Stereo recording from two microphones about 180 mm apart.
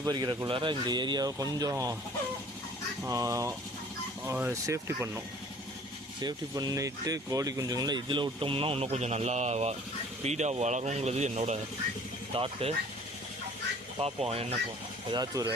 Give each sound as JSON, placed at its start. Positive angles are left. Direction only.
{"t": 0.0, "sound": "speech", "side_deg": -20}
{"t": 3.0, "sound": "speech", "side_deg": -20}
{"t": 14.0, "sound": "speech", "side_deg": -35}
{"t": 15.1, "sound": "speech", "side_deg": -20}